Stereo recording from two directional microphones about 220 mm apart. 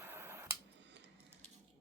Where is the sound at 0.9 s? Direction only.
50° right (ahead or behind).